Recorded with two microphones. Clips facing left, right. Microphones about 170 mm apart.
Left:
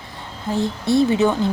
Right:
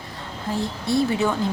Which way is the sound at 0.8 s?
25° left (ahead or behind).